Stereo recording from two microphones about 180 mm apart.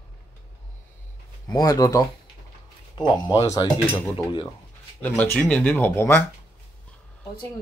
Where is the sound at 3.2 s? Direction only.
20° left (ahead or behind).